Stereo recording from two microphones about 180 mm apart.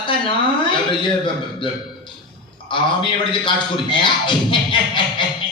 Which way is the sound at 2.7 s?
25° left (ahead or behind).